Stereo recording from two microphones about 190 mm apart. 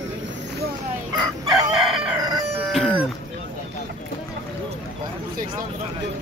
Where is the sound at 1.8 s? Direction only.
Centre (ahead or behind).